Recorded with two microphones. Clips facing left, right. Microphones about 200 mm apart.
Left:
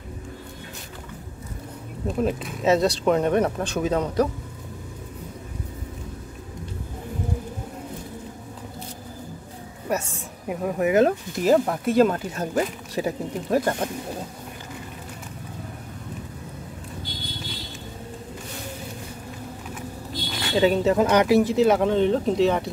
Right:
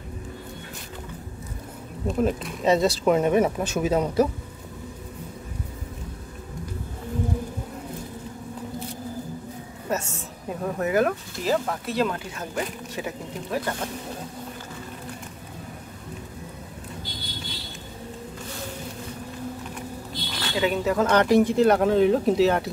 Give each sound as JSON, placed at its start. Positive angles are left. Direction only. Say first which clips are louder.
{"t": 2.0, "sound": "speech", "louder": "right 1 dB", "side_deg": 0}
{"t": 9.8, "sound": "a sound", "louder": "left 2 dB", "side_deg": 10}
{"t": 10.6, "sound": "speech", "louder": "left 4 dB", "side_deg": 15}
{"t": 11.4, "sound": "speech", "louder": "left 6 dB", "side_deg": 50}
{"t": 20.5, "sound": "speech", "louder": "left 4 dB", "side_deg": 30}
{"t": 21.4, "sound": "speech", "louder": "even", "side_deg": 0}